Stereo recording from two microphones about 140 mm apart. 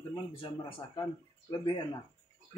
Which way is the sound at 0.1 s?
40° left (ahead or behind).